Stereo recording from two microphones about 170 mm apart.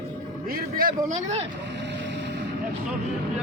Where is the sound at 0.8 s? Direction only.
40° right (ahead or behind).